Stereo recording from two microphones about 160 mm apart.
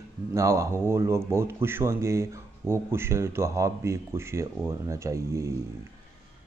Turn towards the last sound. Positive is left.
turn(degrees=-20)  # may be behind; listen again after turning